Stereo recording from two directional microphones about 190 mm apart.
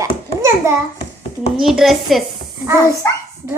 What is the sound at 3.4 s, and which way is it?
Speech, 15° right (ahead or behind).